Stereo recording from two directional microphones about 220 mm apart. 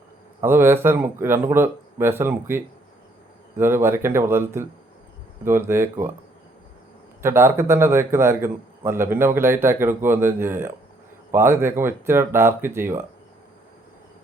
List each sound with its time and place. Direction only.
0.4 s a man's voice: 10° right (ahead or behind)
7.2 s a man's voice: 10° right (ahead or behind)